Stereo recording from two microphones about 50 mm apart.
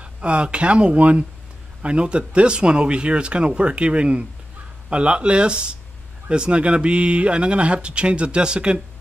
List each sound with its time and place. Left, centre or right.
0.0 s speech: right